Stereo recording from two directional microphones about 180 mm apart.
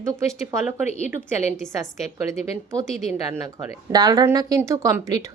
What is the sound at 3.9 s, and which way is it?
Speech, 20° right (ahead or behind).